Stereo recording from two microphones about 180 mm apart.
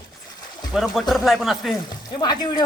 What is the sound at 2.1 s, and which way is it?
Speech, 25° left (ahead or behind).